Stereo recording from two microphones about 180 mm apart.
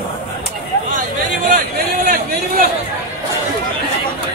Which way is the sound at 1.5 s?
55° right (ahead or behind).